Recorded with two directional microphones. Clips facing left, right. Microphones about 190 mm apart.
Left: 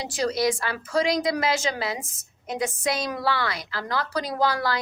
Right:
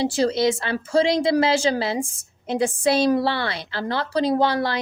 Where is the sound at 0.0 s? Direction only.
30° right (ahead or behind).